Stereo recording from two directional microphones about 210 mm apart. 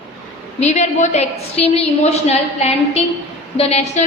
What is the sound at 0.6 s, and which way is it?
A woman's voice, 30° left (ahead or behind).